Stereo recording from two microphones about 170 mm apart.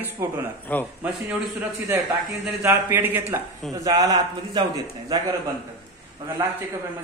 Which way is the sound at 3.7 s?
20° right (ahead or behind).